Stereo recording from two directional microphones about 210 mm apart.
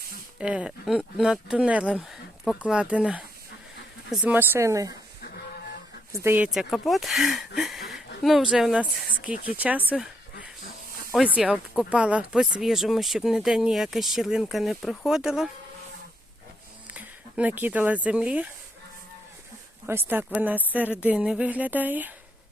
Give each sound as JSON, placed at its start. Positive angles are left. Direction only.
{"t": 0.3, "sound": "speech", "side_deg": -5}
{"t": 5.2, "sound": "a sound", "side_deg": 50}
{"t": 6.1, "sound": "speech", "side_deg": -15}
{"t": 7.8, "sound": "a sound", "side_deg": 50}
{"t": 8.2, "sound": "speech", "side_deg": 0}
{"t": 11.1, "sound": "speech", "side_deg": -5}
{"t": 16.9, "sound": "speech", "side_deg": -5}
{"t": 19.9, "sound": "speech", "side_deg": -10}